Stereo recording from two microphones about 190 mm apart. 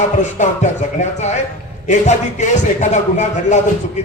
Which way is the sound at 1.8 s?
40° left (ahead or behind).